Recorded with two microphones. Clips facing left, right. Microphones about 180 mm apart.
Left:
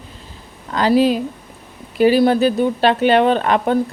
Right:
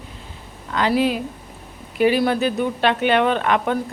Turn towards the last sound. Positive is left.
turn(degrees=35)  # may be behind; listen again after turning